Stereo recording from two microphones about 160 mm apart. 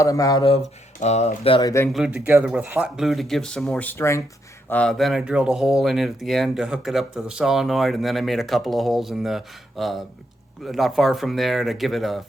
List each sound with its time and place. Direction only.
0.0 s speech: 20° left (ahead or behind)
0.9 s speech: 45° left (ahead or behind)
1.6 s speech: 15° left (ahead or behind)
1.9 s speech: 5° right (ahead or behind); by 4.2 s 15° left (ahead or behind)
4.7 s speech: 5° left (ahead or behind)